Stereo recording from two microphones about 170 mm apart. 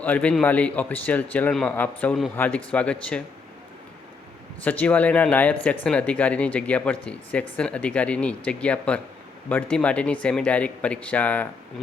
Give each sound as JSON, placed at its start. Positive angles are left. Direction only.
{"t": 0.0, "sound": "a man's voice", "side_deg": 10}
{"t": 4.6, "sound": "a man's voice", "side_deg": 10}